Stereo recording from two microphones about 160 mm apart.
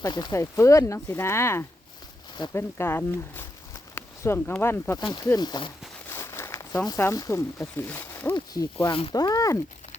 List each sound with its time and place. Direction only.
0.0 s speech: 25° left (ahead or behind)
4.9 s speech: 25° left (ahead or behind)
6.1 s speech: 15° left (ahead or behind)
8.5 s speech: 25° left (ahead or behind)